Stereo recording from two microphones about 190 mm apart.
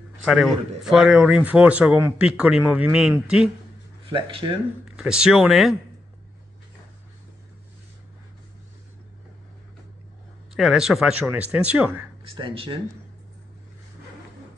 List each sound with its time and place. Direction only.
0.2 s speech: 5° right (ahead or behind)
4.1 s speech: 30° right (ahead or behind)
4.8 s speech: 5° right (ahead or behind)
10.5 s speech: centre (ahead or behind)
12.3 s speech: 30° right (ahead or behind)